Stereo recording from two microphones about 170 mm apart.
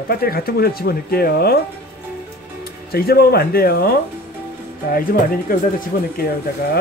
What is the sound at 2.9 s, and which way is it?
Speech, 65° left (ahead or behind).